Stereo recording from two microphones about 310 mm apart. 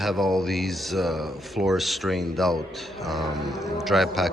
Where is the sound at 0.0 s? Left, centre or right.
Centre.